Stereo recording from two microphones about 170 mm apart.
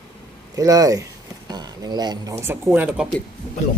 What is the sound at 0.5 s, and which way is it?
Speech, 20° right (ahead or behind).